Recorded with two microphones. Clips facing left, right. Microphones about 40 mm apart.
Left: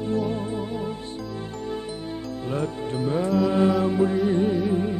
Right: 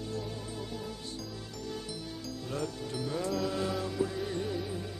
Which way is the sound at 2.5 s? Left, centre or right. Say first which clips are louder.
Left 9 dB; left.